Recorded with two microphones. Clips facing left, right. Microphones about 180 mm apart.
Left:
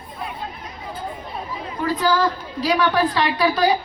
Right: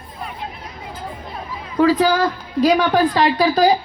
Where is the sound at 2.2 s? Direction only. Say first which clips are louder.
Right 4 dB; 45° right (ahead or behind).